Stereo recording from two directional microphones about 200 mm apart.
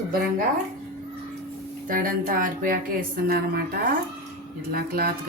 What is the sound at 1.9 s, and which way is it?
Speech, 45° right (ahead or behind).